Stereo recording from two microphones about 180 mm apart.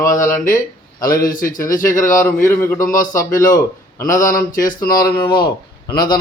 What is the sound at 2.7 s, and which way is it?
Speech, 50° left (ahead or behind).